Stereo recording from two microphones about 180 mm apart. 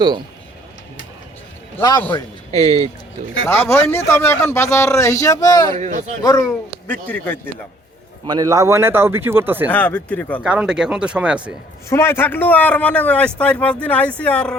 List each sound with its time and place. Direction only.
2.5 s speech: 35° right (ahead or behind)
3.5 s a man's voice: 15° left (ahead or behind)
5.7 s speech: 40° right (ahead or behind)
6.2 s a man's voice: 20° left (ahead or behind)
8.3 s speech: 20° right (ahead or behind)
9.7 s a man's voice: 5° left (ahead or behind)
10.4 s speech: 5° right (ahead or behind)
11.9 s a man's voice: 15° left (ahead or behind)